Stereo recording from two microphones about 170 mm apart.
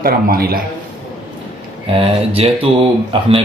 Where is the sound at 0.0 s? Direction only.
60° right (ahead or behind).